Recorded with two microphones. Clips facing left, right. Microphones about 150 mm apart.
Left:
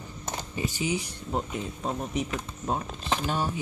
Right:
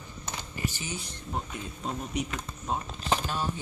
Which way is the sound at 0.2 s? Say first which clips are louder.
Left 4 dB; 40° left (ahead or behind).